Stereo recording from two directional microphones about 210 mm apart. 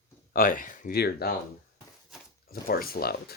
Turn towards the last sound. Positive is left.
turn(degrees=45)  # may be behind; listen again after turning